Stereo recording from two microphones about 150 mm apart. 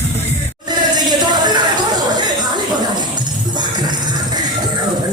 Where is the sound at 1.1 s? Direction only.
30° right (ahead or behind).